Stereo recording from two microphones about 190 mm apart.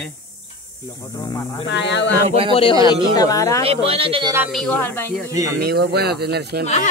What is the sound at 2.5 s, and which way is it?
Speech, 30° left (ahead or behind).